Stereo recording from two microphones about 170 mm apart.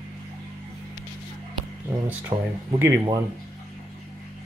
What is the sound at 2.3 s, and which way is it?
Speech, 30° right (ahead or behind).